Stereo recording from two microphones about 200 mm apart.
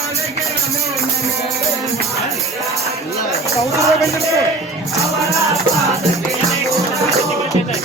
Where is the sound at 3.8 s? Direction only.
Centre (ahead or behind).